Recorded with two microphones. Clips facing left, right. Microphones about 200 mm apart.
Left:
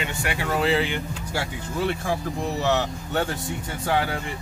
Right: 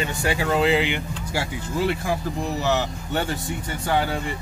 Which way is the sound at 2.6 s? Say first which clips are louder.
Left 1 dB; 5° right (ahead or behind).